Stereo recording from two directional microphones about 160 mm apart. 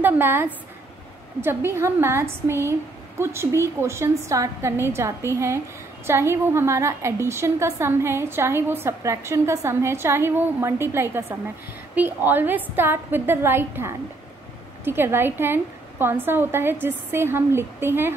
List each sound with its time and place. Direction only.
0.0 s a woman's voice: 15° right (ahead or behind)